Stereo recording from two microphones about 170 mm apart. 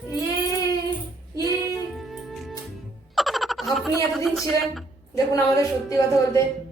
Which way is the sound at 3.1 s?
Centre (ahead or behind).